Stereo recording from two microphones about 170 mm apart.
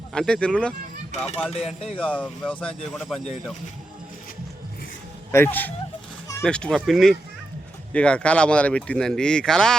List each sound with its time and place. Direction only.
0.1 s speech: 5° left (ahead or behind)
1.5 s speech: 35° left (ahead or behind)
2.0 s speech: 10° left (ahead or behind)
5.3 s speech: 15° left (ahead or behind)